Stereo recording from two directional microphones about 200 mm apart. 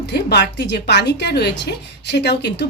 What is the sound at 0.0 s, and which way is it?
A woman's voice, 55° left (ahead or behind).